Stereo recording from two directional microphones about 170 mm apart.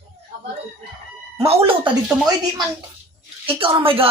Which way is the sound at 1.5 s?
30° right (ahead or behind).